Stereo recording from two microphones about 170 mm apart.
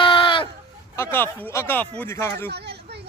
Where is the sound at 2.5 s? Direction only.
75° right (ahead or behind).